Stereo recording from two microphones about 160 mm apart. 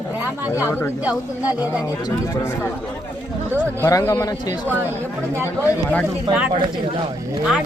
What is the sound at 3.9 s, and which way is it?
Speech, 20° left (ahead or behind).